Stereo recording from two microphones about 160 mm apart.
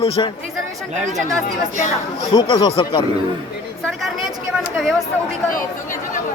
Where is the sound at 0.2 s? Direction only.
30° left (ahead or behind).